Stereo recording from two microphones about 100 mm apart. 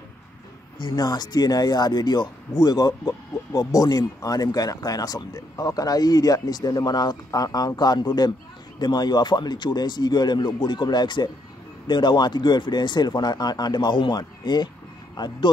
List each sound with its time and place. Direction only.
0.7 s speech: 45° left (ahead or behind)